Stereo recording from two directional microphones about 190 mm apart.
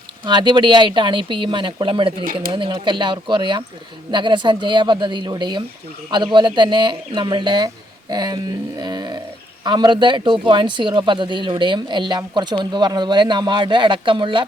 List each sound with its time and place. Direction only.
0.3 s a man's voice: 25° right (ahead or behind)